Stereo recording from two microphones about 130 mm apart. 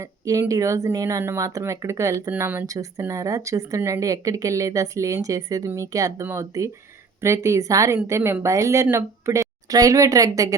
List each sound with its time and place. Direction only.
0.0 s speech: 25° right (ahead or behind)